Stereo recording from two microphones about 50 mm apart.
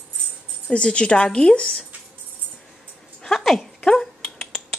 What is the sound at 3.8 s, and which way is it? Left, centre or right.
Dog, centre.